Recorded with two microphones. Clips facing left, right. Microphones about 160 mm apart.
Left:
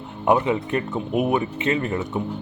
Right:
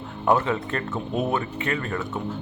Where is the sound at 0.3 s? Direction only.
15° left (ahead or behind).